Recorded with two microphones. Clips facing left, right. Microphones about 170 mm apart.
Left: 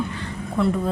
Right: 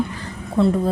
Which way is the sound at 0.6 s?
30° right (ahead or behind).